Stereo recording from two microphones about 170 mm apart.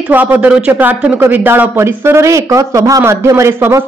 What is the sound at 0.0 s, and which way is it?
Speech, 10° right (ahead or behind).